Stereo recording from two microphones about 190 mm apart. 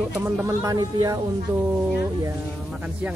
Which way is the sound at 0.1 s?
15° right (ahead or behind).